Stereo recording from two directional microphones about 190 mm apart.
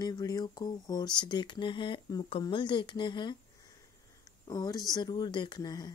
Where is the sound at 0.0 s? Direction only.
20° left (ahead or behind).